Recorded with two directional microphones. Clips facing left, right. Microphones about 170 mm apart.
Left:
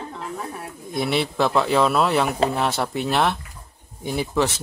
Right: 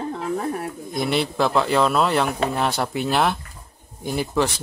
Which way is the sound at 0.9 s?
Centre (ahead or behind).